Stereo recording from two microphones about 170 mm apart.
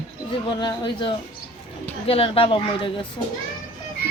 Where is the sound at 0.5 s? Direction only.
25° left (ahead or behind).